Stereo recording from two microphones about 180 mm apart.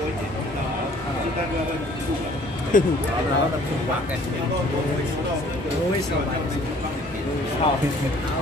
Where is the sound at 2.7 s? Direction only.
50° left (ahead or behind).